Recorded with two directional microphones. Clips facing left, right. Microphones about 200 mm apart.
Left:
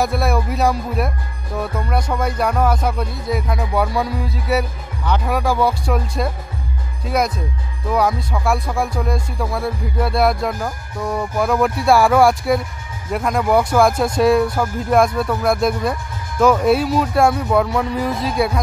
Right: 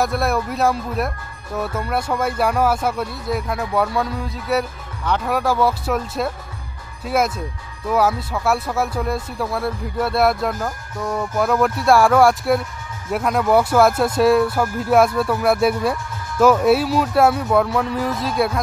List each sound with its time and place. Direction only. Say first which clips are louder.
0.0 s speech: left 1 dB; centre (ahead or behind)